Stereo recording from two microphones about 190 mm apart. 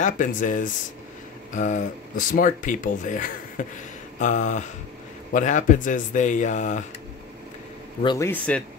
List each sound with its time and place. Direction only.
0.0 s speech: 45° left (ahead or behind)
8.0 s a man's voice: 25° left (ahead or behind)
8.3 s speech: 5° left (ahead or behind)